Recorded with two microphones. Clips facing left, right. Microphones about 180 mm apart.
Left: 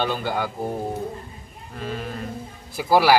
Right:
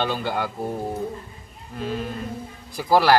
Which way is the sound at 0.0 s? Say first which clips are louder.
Even; centre (ahead or behind).